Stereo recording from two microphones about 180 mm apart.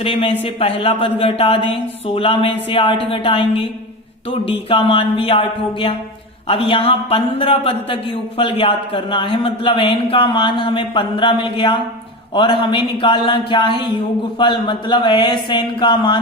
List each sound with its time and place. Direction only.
0.0 s a man's voice: 30° left (ahead or behind)